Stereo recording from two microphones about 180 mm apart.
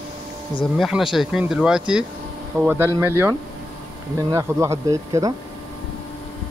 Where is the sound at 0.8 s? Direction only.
Centre (ahead or behind).